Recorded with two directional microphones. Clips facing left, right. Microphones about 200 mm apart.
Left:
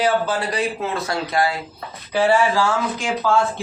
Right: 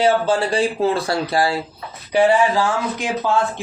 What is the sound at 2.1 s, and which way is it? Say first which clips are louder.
Speech: right 2 dB; 15° right (ahead or behind).